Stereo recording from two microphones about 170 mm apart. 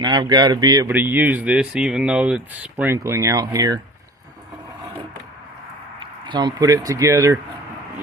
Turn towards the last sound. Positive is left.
turn(degrees=-20)  # may be behind; listen again after turning